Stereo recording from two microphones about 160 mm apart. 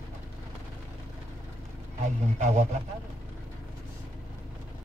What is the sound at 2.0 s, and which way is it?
Speech, 45° right (ahead or behind).